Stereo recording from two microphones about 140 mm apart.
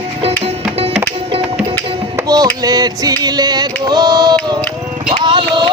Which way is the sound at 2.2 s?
25° right (ahead or behind).